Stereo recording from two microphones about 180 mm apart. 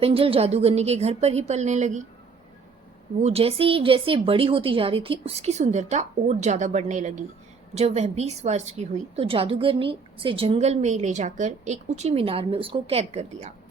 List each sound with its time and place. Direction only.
0.0 s a woman's voice: 30° right (ahead or behind)
3.2 s a woman's voice: 35° right (ahead or behind)